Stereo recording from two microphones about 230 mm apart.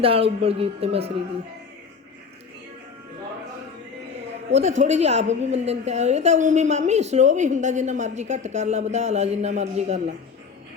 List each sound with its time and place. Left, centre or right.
0.0 s a woman's voice: right
4.8 s a woman's voice: right